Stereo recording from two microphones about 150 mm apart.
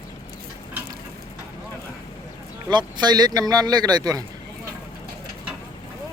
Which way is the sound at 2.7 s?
30° right (ahead or behind).